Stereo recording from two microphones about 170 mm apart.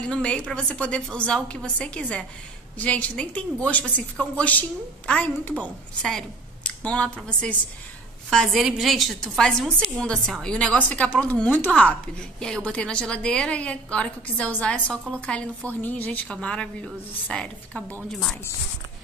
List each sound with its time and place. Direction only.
0.0 s a woman's voice: 5° left (ahead or behind)